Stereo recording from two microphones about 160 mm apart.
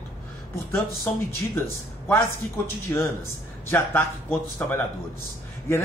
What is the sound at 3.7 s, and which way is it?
Speech, 15° left (ahead or behind).